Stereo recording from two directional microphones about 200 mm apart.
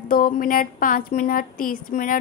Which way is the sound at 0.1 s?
45° left (ahead or behind).